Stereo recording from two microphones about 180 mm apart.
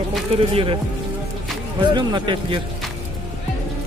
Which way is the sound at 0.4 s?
30° right (ahead or behind).